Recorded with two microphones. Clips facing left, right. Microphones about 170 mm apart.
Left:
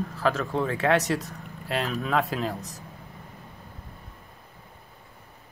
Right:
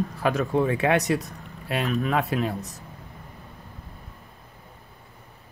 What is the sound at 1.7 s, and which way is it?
Speech, centre (ahead or behind).